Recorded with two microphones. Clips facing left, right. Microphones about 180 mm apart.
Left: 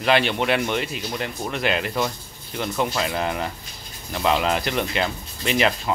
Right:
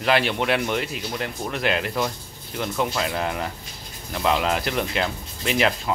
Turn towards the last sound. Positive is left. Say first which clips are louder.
# left 1 dB
turn(degrees=0)  # may be behind; listen again after turning